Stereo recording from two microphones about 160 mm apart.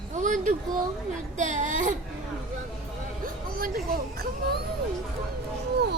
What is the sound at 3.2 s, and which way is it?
Speech, 65° right (ahead or behind).